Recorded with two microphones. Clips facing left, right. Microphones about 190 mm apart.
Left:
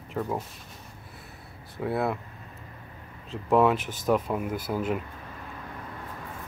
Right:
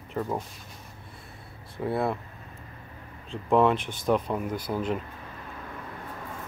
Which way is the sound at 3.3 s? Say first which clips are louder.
Even; 5° left (ahead or behind).